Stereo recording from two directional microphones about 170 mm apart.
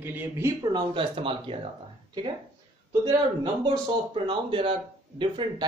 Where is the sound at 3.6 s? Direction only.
30° right (ahead or behind).